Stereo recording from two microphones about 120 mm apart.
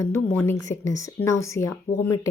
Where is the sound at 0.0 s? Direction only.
20° left (ahead or behind).